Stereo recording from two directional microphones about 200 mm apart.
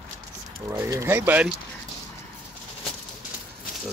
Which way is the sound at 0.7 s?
15° right (ahead or behind).